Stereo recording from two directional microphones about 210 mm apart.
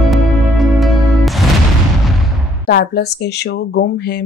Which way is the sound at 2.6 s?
50° left (ahead or behind).